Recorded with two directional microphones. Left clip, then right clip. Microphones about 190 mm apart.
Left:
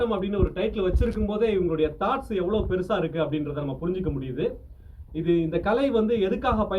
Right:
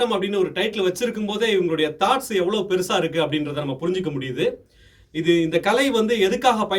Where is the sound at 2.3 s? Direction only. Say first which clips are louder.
Right 5 dB; 45° right (ahead or behind).